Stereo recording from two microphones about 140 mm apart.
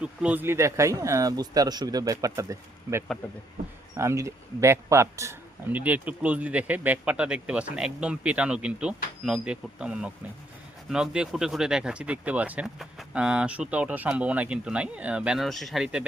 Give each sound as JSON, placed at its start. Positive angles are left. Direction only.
{"t": 0.0, "sound": "speech", "side_deg": -10}